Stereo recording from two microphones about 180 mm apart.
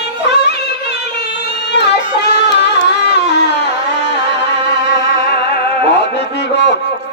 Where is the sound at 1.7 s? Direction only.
70° left (ahead or behind).